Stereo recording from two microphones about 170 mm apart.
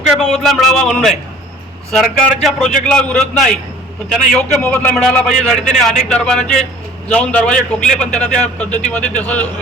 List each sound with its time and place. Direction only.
0.2 s a man's voice: centre (ahead or behind)